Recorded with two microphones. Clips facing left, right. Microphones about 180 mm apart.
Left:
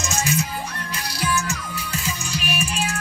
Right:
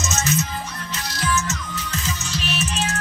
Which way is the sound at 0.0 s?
15° left (ahead or behind).